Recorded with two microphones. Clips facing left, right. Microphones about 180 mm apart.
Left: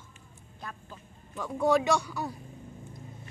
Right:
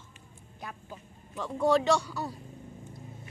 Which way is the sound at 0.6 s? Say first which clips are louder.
Right 1 dB; 15° right (ahead or behind).